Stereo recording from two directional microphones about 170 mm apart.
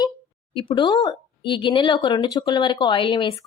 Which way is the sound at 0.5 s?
30° left (ahead or behind).